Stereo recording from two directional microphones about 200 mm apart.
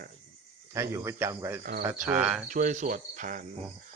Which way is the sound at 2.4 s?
40° right (ahead or behind).